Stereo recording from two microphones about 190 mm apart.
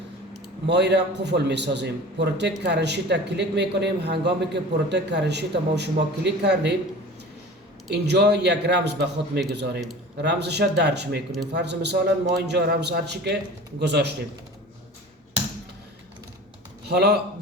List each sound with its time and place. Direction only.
0.7 s a man's voice: 65° right (ahead or behind)
7.9 s a man's voice: 60° right (ahead or behind)
16.9 s a man's voice: 60° right (ahead or behind)